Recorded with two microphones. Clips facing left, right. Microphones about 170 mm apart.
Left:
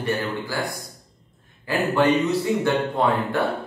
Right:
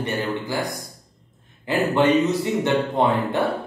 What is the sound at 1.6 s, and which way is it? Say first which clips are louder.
Speech: right 1 dB; 20° right (ahead or behind).